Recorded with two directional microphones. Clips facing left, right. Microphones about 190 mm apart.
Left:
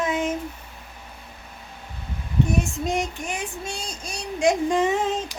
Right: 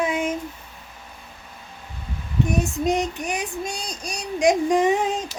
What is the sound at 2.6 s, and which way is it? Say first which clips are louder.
Female singing: right 3 dB; 20° right (ahead or behind).